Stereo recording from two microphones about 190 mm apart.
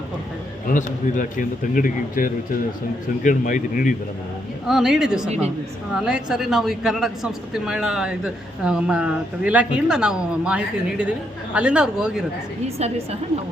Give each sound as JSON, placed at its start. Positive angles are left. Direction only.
{"t": 0.7, "sound": "a man's voice", "side_deg": 45}
{"t": 4.6, "sound": "speech", "side_deg": 0}
{"t": 12.6, "sound": "a woman's voice", "side_deg": -35}